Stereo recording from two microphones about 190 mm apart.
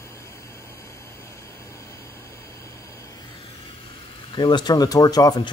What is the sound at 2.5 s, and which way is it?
Vehicle, 15° left (ahead or behind).